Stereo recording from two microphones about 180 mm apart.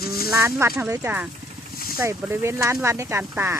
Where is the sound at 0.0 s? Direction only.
60° left (ahead or behind).